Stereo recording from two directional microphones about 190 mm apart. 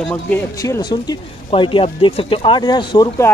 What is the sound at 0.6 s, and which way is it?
Speech, 20° left (ahead or behind).